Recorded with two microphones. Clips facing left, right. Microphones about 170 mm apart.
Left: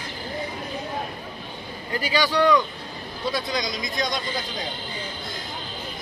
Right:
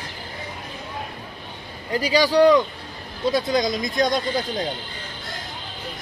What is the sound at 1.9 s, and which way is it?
Speech, 35° right (ahead or behind).